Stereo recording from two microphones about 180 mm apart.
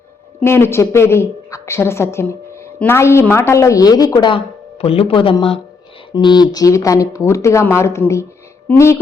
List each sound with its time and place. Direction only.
0.3 s a woman's voice: 15° left (ahead or behind)